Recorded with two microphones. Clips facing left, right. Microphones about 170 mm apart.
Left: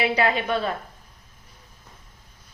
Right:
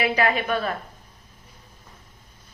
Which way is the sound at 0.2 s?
25° left (ahead or behind).